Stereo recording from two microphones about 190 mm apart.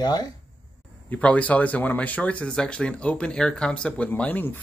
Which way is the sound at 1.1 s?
5° left (ahead or behind).